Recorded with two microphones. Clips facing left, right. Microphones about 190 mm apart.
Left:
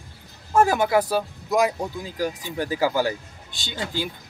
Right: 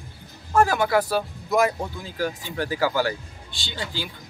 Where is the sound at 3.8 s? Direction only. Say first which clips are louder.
Left 4 dB; 50° left (ahead or behind).